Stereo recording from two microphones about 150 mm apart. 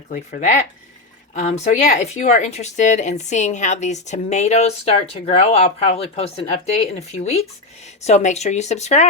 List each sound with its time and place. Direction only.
0.1 s a woman's voice: 55° left (ahead or behind)